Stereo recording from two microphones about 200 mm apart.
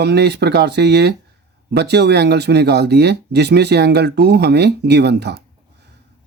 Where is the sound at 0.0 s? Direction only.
55° right (ahead or behind).